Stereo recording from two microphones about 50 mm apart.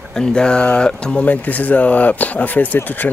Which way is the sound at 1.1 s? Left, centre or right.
Left.